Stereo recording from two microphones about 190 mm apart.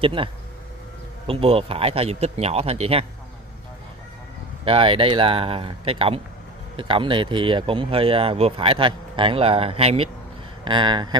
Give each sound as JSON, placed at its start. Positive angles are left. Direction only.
{"t": 0.0, "sound": "speech", "side_deg": -25}
{"t": 4.6, "sound": "speech", "side_deg": -25}